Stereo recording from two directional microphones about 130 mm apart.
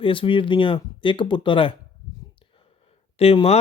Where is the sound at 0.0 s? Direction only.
40° left (ahead or behind).